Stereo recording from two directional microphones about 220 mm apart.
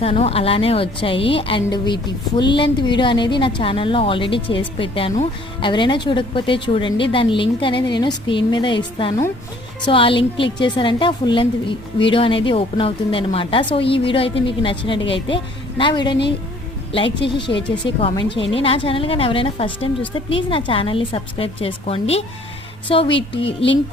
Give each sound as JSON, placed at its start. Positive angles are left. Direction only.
{"t": 0.0, "sound": "a woman's voice", "side_deg": 25}
{"t": 17.3, "sound": "a woman's voice", "side_deg": 20}